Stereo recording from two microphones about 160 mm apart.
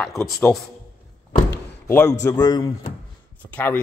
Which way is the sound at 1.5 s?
15° left (ahead or behind).